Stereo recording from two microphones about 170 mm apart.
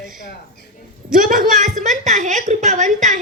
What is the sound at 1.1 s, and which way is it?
A woman's voice, 50° right (ahead or behind).